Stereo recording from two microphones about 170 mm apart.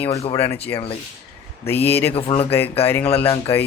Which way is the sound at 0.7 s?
35° left (ahead or behind).